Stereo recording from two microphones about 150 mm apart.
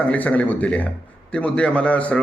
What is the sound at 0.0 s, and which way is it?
A man's voice, 10° left (ahead or behind).